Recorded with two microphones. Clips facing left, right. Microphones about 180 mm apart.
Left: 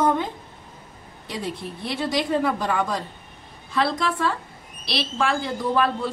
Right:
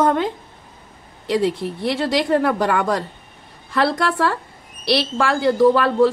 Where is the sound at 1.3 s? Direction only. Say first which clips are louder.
Right 11 dB; 80° right.